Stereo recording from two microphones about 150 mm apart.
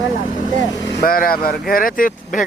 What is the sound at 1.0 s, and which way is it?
Speech, 75° left (ahead or behind).